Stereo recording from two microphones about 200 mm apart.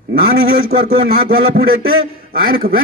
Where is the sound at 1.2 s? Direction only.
50° right (ahead or behind).